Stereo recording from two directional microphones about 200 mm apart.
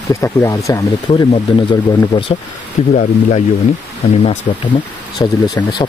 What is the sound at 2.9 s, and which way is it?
Speech, 40° left (ahead or behind).